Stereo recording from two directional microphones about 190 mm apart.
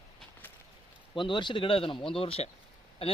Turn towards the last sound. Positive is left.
turn(degrees=30)  # may be behind; listen again after turning